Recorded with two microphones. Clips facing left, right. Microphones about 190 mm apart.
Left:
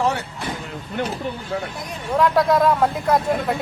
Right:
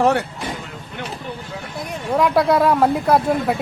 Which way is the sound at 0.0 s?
60° right (ahead or behind).